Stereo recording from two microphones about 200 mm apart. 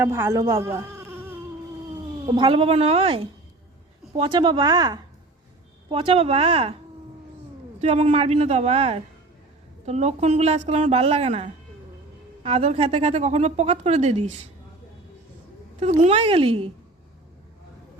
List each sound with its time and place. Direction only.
0.0 s speech: 10° right (ahead or behind)
2.2 s a woman's voice: 25° right (ahead or behind)
7.8 s speech: 35° right (ahead or behind)
15.8 s speech: 30° right (ahead or behind)